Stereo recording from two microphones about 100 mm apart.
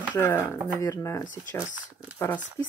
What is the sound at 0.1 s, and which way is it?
Speech, 25° left (ahead or behind).